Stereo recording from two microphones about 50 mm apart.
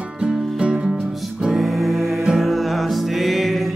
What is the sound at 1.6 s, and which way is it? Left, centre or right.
Music, centre.